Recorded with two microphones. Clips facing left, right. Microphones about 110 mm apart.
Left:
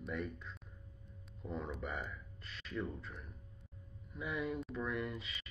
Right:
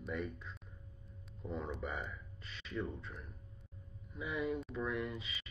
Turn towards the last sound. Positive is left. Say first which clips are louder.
# right 1 dB
turn(degrees=0)  # may be behind; listen again after turning